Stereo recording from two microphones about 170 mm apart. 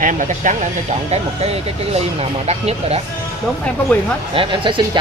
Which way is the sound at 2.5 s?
40° right (ahead or behind).